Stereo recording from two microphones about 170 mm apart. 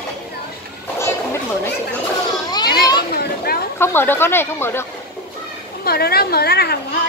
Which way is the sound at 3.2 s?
65° left (ahead or behind).